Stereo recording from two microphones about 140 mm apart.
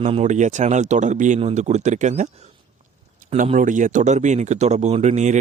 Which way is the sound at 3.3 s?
65° right (ahead or behind).